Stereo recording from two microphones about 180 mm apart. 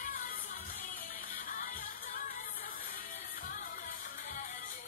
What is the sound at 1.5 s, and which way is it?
Music, 50° left (ahead or behind).